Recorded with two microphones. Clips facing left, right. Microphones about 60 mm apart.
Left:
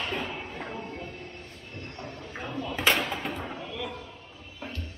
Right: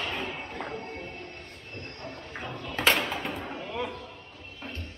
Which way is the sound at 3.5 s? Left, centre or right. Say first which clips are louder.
Right 2 dB; right.